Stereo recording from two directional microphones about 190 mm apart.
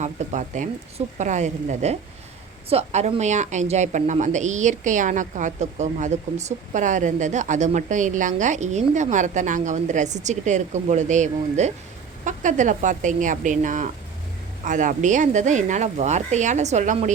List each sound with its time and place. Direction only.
0.0 s a woman's voice: 40° right (ahead or behind)